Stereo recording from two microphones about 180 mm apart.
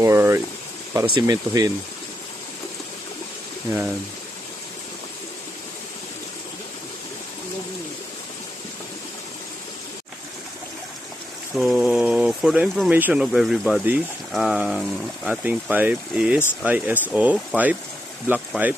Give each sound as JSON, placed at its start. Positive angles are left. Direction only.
{"t": 0.0, "sound": "speech", "side_deg": -15}
{"t": 3.7, "sound": "speech", "side_deg": -15}
{"t": 11.5, "sound": "speech", "side_deg": -5}